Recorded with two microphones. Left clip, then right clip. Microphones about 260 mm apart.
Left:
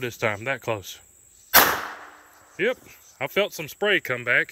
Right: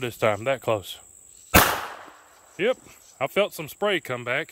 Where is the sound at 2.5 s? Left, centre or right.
Centre.